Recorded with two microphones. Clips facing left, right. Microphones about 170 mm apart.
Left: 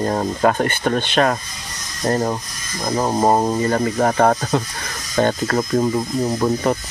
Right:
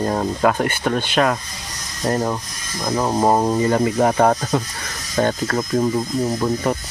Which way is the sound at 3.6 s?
15° right (ahead or behind).